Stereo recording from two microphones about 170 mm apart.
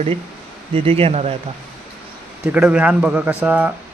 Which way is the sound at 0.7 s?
35° right (ahead or behind).